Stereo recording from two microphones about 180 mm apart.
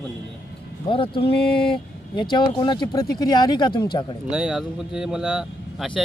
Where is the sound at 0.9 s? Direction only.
30° left (ahead or behind).